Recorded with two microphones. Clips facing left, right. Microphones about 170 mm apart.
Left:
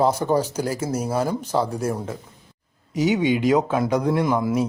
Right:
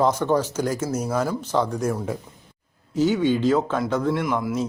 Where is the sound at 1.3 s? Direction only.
10° left (ahead or behind).